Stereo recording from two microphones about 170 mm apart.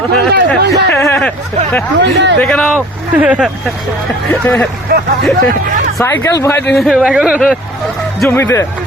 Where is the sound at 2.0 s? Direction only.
90° right.